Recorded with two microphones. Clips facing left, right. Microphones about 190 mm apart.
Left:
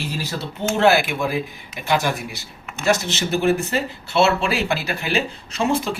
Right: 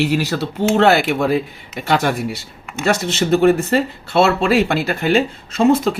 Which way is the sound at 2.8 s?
60° right (ahead or behind).